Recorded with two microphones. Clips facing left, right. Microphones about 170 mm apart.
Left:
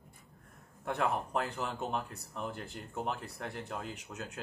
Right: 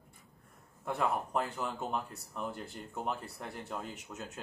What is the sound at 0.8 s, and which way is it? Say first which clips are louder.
Speech: even; centre (ahead or behind).